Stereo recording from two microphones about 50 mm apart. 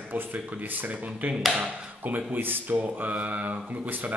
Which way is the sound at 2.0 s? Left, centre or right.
Right.